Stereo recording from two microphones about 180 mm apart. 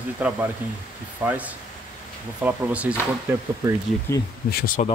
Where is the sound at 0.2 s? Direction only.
10° right (ahead or behind).